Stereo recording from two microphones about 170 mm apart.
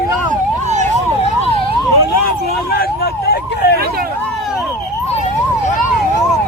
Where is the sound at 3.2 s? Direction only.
70° left (ahead or behind).